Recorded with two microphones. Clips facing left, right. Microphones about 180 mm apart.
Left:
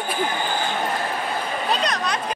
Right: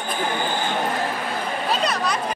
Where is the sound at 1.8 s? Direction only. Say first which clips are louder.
Right 1 dB; 5° right (ahead or behind).